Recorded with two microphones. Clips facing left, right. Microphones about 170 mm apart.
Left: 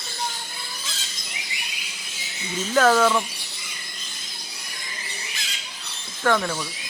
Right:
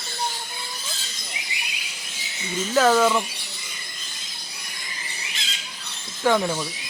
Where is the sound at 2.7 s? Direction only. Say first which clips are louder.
Even; 5° right (ahead or behind).